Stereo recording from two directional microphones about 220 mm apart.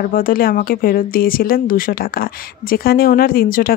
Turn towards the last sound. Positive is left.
turn(degrees=40)  # may be behind; listen again after turning